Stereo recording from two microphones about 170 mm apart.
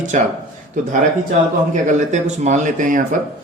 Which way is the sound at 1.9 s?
45° right (ahead or behind).